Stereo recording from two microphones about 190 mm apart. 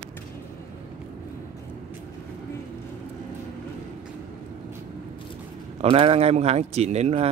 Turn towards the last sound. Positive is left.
turn(degrees=-35)  # may be behind; listen again after turning